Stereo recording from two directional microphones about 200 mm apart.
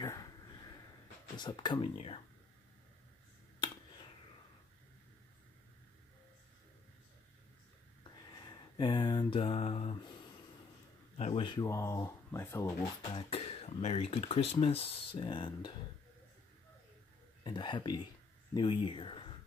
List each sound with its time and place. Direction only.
1.3 s speech: 20° left (ahead or behind)
8.3 s a sound: 20° left (ahead or behind)
11.1 s speech: 30° left (ahead or behind); by 12.7 s 15° left (ahead or behind)
13.0 s speech: 25° left (ahead or behind)
17.4 s speech: 25° left (ahead or behind)